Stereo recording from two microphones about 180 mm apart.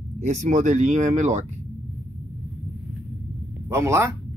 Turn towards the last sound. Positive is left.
turn(degrees=-15)  # may be behind; listen again after turning